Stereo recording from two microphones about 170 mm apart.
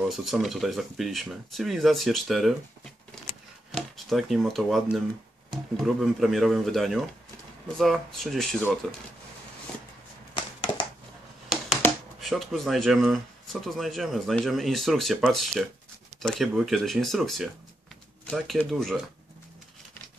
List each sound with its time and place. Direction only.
0.1 s speech: centre (ahead or behind)
10.3 s a sound: 25° left (ahead or behind)
12.2 s speech: centre (ahead or behind)